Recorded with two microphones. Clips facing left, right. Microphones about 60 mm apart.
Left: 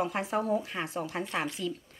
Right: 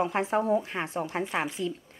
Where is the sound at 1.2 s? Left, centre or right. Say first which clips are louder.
Right 3 dB; centre.